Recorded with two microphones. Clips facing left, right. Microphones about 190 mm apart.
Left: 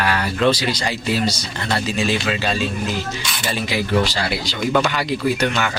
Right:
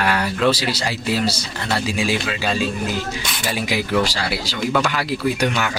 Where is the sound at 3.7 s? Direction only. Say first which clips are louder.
Left 1 dB; 10° right (ahead or behind).